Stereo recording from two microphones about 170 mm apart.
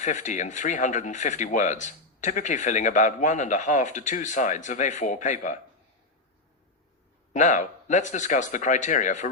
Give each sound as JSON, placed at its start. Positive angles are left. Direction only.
{"t": 0.0, "sound": "speech", "side_deg": 45}
{"t": 7.3, "sound": "speech", "side_deg": 45}